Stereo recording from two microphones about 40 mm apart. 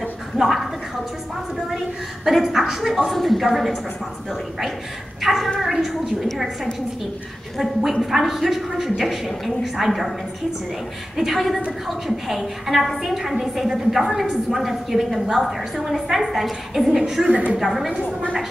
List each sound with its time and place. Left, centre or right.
0.4 s speech: centre
2.2 s a woman's voice: centre
11.1 s a woman's voice: centre
17.3 s a woman's voice: right
17.6 s a woman's voice: centre